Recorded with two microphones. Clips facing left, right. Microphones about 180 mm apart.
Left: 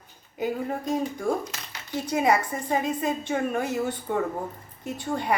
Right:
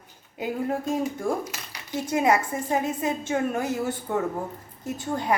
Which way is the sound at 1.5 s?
15° right (ahead or behind).